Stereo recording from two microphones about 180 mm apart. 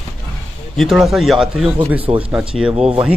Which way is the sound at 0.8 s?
Centre (ahead or behind).